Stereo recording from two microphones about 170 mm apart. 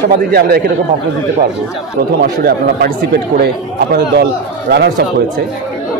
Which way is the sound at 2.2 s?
70° right (ahead or behind).